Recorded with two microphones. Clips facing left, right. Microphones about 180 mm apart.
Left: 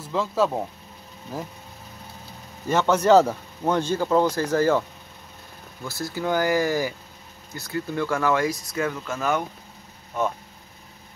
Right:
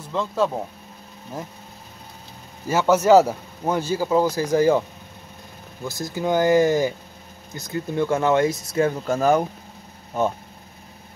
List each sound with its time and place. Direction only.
0.0 s speech: centre (ahead or behind)
2.7 s speech: 10° right (ahead or behind)
5.9 s speech: 15° right (ahead or behind); by 9.5 s 35° right (ahead or behind)